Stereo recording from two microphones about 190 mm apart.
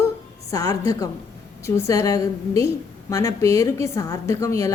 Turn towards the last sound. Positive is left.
turn(degrees=15)  # may be behind; listen again after turning